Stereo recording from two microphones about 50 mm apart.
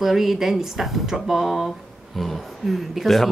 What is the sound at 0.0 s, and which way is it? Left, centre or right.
Speech, centre.